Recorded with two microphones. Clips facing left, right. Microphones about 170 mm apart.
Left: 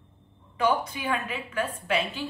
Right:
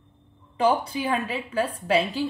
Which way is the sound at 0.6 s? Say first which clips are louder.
Right 3 dB; 30° right (ahead or behind).